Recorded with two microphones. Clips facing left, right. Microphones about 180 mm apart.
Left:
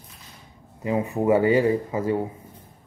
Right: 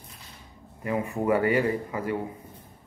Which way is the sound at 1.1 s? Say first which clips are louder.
Left 5 dB; 20° left (ahead or behind).